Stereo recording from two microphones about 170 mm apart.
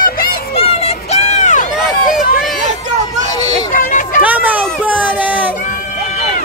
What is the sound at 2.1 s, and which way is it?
Run, centre (ahead or behind).